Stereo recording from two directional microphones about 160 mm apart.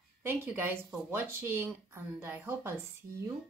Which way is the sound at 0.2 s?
10° right (ahead or behind).